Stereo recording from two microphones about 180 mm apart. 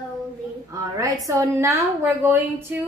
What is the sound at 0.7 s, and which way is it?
A woman's voice, 20° right (ahead or behind).